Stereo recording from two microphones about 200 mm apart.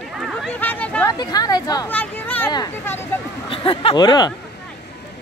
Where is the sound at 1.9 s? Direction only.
10° left (ahead or behind).